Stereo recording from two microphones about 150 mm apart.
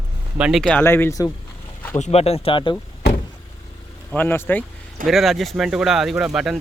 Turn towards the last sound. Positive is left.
turn(degrees=-5)  # may be behind; listen again after turning